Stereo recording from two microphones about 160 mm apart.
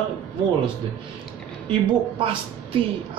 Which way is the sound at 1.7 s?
35° right (ahead or behind).